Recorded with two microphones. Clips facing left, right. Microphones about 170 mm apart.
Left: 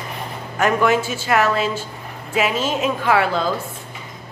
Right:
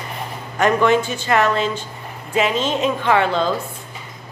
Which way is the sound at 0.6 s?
5° left (ahead or behind).